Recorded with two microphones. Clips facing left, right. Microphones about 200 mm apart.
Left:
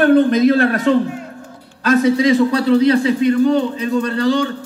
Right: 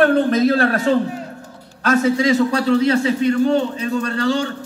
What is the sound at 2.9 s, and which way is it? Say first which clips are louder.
Speech: left 3 dB; 30° right (ahead or behind).